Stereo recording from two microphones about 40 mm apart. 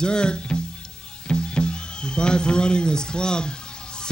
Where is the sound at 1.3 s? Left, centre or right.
Left.